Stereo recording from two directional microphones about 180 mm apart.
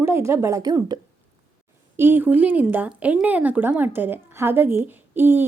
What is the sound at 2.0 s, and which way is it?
A child's voice, 10° right (ahead or behind).